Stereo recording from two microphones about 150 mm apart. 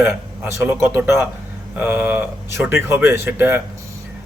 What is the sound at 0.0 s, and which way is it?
A man's voice, 15° right (ahead or behind).